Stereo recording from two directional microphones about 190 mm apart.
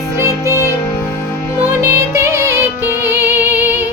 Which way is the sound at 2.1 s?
15° right (ahead or behind).